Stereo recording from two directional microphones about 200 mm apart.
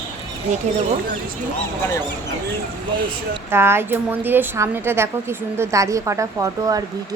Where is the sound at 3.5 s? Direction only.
10° right (ahead or behind).